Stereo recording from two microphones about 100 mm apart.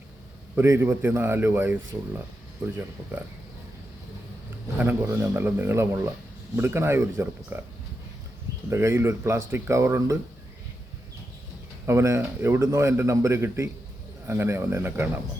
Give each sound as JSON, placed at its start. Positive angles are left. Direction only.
{"t": 0.5, "sound": "a man's voice", "side_deg": -25}
{"t": 5.0, "sound": "a man's voice", "side_deg": -25}
{"t": 8.7, "sound": "a man's voice", "side_deg": -25}
{"t": 11.9, "sound": "a man's voice", "side_deg": -30}